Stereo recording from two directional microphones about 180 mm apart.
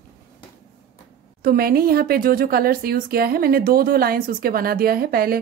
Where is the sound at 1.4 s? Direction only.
55° right (ahead or behind).